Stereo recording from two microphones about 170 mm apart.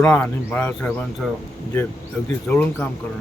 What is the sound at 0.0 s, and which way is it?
Speech, 10° left (ahead or behind).